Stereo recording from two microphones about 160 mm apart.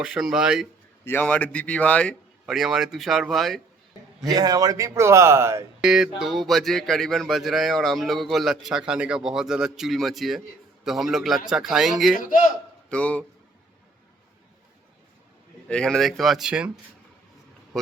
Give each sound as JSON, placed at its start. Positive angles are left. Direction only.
{"t": 0.0, "sound": "speech", "side_deg": -5}
{"t": 1.0, "sound": "speech", "side_deg": 10}
{"t": 4.4, "sound": "speech", "side_deg": -25}
{"t": 5.8, "sound": "speech", "side_deg": -5}
{"t": 12.1, "sound": "a man's voice", "side_deg": 60}
{"t": 12.9, "sound": "speech", "side_deg": 10}
{"t": 15.7, "sound": "speech", "side_deg": 5}